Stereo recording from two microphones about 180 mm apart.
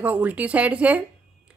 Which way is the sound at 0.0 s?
10° right (ahead or behind).